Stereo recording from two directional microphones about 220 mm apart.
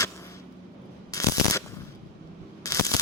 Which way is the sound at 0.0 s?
15° left (ahead or behind).